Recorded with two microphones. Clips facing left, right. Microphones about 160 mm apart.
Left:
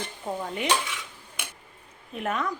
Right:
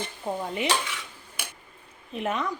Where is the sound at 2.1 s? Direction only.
Centre (ahead or behind).